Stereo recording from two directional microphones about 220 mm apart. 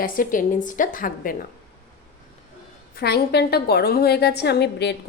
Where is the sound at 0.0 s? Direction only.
40° left (ahead or behind).